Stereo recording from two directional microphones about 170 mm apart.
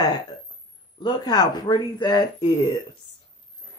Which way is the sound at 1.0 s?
25° left (ahead or behind).